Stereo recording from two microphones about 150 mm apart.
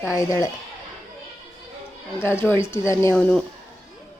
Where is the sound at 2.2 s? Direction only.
15° left (ahead or behind).